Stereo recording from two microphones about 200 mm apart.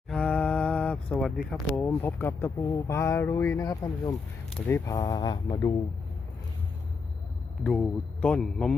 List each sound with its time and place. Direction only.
0.1 s mantra: 5° left (ahead or behind)
1.4 s speech: centre (ahead or behind); by 5.7 s 20° left (ahead or behind)
7.6 s a man's voice: 5° left (ahead or behind)